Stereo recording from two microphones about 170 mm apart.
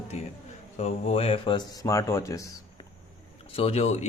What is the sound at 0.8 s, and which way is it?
Speech, 35° left (ahead or behind).